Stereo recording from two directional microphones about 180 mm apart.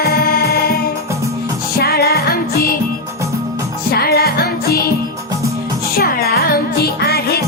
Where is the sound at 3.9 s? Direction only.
60° left (ahead or behind).